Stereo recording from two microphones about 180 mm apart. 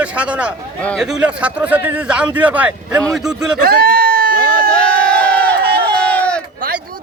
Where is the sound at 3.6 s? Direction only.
55° right (ahead or behind).